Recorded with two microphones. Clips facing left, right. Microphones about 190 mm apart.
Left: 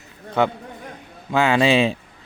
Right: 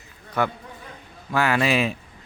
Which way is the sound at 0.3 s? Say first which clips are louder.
Left 4 dB; 25° left (ahead or behind).